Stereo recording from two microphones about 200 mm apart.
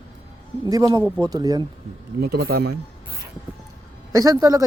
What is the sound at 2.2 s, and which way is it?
Speech, 55° right (ahead or behind).